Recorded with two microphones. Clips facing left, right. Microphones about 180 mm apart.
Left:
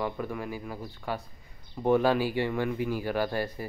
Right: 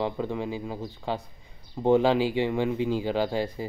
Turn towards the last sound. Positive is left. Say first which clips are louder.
# right 3 dB
turn(degrees=-20)  # may be behind; listen again after turning